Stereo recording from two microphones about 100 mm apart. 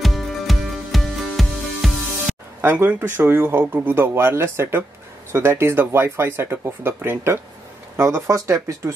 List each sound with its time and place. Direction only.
0.0 s music: centre (ahead or behind)
2.6 s speech: 20° right (ahead or behind)